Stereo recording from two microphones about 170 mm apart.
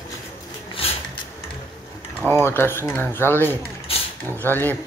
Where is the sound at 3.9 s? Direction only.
35° left (ahead or behind).